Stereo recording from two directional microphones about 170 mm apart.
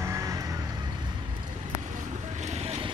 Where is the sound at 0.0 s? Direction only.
20° right (ahead or behind).